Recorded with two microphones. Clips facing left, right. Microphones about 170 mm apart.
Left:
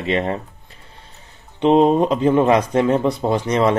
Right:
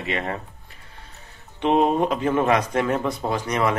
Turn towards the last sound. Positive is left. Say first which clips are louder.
# left 6 dB
turn(degrees=25)  # may be behind; listen again after turning